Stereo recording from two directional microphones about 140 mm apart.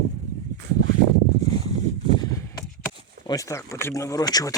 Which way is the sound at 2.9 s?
25° left (ahead or behind).